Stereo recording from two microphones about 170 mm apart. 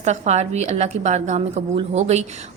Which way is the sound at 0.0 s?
40° right (ahead or behind).